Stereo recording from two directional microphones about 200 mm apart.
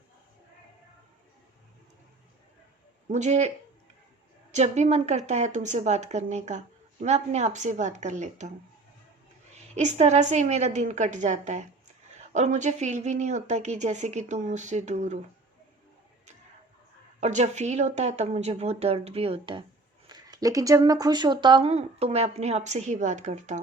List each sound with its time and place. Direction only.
3.1 s speech: 35° right (ahead or behind)
4.5 s speech: 35° right (ahead or behind)
9.6 s speech: 35° right (ahead or behind)
17.2 s speech: 35° right (ahead or behind)